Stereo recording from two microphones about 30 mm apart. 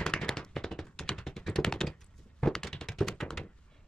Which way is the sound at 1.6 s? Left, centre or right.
Centre.